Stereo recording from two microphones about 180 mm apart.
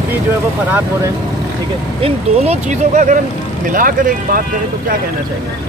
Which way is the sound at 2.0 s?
35° right (ahead or behind).